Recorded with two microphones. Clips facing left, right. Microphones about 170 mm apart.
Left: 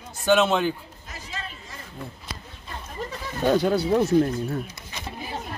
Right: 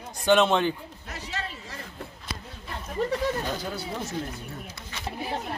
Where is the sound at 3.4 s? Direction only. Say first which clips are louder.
Left 12 dB; 70° left (ahead or behind).